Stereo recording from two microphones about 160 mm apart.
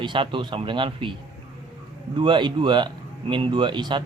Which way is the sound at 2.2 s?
30° right (ahead or behind).